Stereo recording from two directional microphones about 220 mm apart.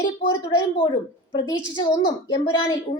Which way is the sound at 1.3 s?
20° left (ahead or behind).